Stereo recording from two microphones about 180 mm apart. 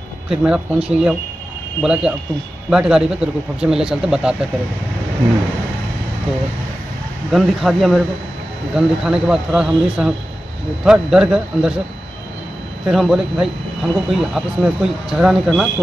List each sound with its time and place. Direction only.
0.3 s speech: 5° right (ahead or behind)
7.3 s speech: centre (ahead or behind)
12.8 s speech: centre (ahead or behind)